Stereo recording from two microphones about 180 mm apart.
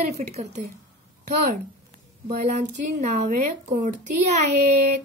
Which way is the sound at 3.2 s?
45° right (ahead or behind).